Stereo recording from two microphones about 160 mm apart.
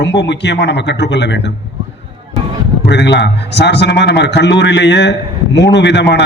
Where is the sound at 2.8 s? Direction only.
90° left.